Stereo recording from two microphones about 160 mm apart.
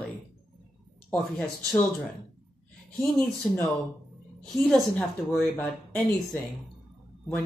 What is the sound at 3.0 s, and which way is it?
A woman's voice, centre (ahead or behind).